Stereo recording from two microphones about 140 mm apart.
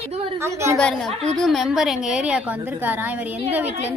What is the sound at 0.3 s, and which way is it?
Speech, 20° right (ahead or behind).